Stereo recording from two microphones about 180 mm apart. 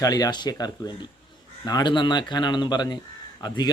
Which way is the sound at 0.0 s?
20° left (ahead or behind).